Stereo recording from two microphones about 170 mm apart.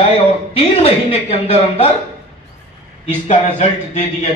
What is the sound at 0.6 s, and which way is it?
A man's voice, 35° left (ahead or behind).